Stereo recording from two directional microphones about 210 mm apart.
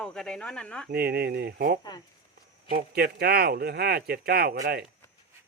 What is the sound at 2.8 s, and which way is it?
Speech, 50° right (ahead or behind).